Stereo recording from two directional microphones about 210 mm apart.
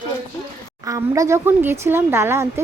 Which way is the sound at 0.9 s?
15° right (ahead or behind).